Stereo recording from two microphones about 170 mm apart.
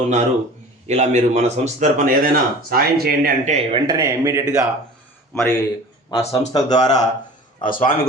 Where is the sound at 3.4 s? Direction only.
40° right (ahead or behind).